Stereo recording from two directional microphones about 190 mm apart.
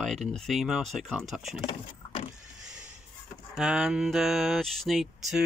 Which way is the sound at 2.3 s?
5° right (ahead or behind).